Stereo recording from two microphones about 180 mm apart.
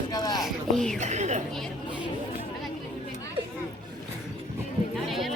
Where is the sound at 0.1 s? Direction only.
20° left (ahead or behind).